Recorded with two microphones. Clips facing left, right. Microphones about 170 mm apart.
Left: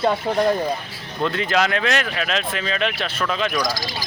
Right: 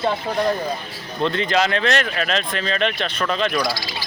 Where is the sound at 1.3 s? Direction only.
5° left (ahead or behind).